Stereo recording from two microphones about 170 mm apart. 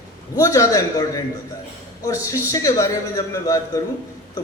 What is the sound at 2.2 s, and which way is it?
A man's voice, 20° left (ahead or behind).